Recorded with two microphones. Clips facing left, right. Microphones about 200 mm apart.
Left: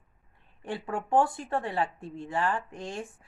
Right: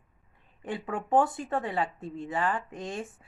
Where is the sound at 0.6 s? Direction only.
15° right (ahead or behind).